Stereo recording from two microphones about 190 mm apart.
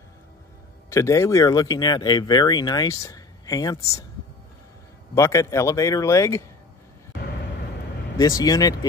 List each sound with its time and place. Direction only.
0.8 s speech: 15° left (ahead or behind)
5.1 s speech: 15° left (ahead or behind)
8.2 s speech: 20° left (ahead or behind)